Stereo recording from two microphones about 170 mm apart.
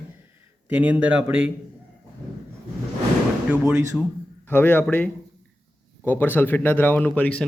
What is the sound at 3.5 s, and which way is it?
Speech, 5° right (ahead or behind).